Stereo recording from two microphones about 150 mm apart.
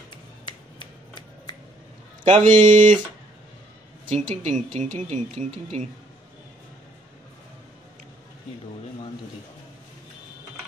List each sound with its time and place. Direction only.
0.1 s a sound: 30° left (ahead or behind)
2.2 s speech: 40° right (ahead or behind)
4.0 s speech: 55° right (ahead or behind)